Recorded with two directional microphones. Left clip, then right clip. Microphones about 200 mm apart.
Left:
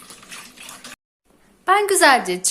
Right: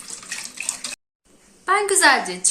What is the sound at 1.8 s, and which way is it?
Speech, 50° left (ahead or behind).